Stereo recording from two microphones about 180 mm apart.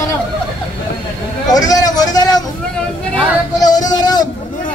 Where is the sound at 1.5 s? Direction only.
20° left (ahead or behind).